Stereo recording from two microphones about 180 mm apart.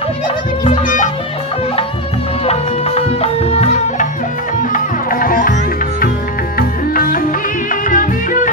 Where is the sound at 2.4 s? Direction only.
35° left (ahead or behind).